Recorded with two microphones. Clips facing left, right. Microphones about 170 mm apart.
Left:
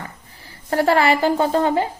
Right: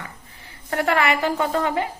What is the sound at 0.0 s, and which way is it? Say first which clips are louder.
A woman's voice: left 3 dB; 35° left (ahead or behind).